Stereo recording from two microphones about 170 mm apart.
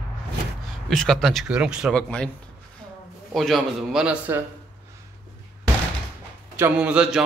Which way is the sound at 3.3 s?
Centre (ahead or behind).